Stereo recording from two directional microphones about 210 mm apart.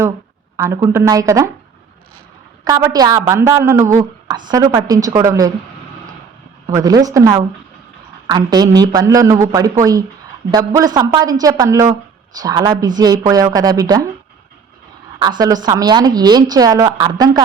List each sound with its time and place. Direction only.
0.5 s a woman's voice: 15° right (ahead or behind)
2.6 s a woman's voice: 15° right (ahead or behind)
6.7 s a woman's voice: 15° right (ahead or behind)
15.2 s a woman's voice: 20° right (ahead or behind)